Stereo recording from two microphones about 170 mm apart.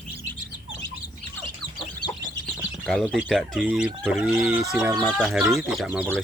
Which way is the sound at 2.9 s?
Centre (ahead or behind).